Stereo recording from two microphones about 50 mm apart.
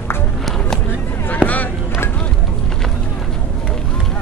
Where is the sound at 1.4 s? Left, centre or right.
Right.